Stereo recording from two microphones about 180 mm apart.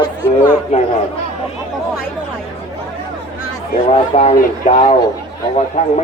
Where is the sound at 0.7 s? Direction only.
40° left (ahead or behind).